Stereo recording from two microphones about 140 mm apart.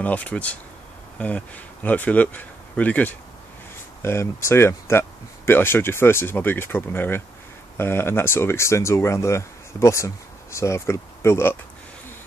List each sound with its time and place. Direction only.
0.0 s speech: 10° left (ahead or behind)